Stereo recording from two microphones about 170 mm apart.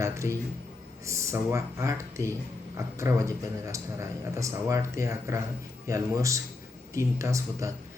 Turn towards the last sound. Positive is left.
turn(degrees=-20)  # may be behind; listen again after turning